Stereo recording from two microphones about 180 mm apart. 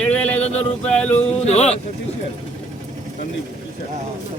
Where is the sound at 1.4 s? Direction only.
35° left (ahead or behind).